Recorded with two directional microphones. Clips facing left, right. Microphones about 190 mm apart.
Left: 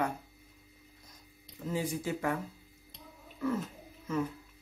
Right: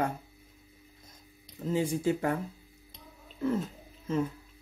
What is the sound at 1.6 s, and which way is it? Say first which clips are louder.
Speech: right 6 dB; 25° right (ahead or behind).